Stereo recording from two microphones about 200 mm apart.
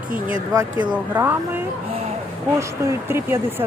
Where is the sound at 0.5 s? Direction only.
20° right (ahead or behind).